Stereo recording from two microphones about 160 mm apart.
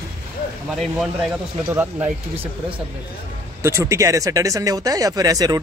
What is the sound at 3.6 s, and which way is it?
Speech, 15° right (ahead or behind).